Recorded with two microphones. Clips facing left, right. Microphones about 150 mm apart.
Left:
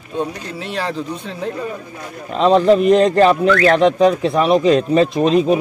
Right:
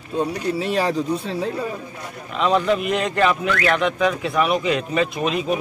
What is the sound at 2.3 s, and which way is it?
Speech, 35° left (ahead or behind).